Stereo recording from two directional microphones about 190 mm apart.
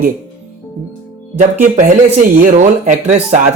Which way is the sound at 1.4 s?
45° right (ahead or behind).